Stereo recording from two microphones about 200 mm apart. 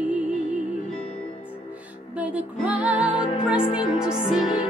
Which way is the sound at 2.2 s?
5° right (ahead or behind).